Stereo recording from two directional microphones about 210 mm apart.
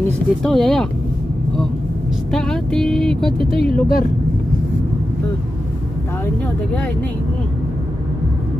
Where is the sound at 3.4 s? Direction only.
25° right (ahead or behind).